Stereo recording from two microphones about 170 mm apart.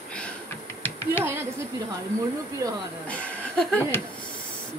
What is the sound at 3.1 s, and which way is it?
Speech, 10° left (ahead or behind).